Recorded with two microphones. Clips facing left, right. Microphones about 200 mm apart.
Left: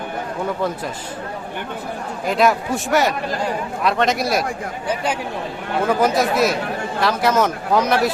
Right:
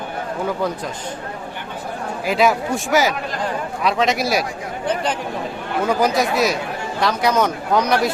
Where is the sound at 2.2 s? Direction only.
5° right (ahead or behind).